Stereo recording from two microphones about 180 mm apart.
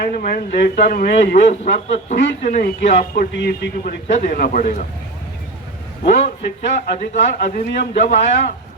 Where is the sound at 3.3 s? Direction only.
70° left (ahead or behind).